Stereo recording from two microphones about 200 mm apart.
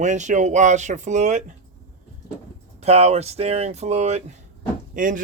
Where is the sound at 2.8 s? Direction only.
30° right (ahead or behind).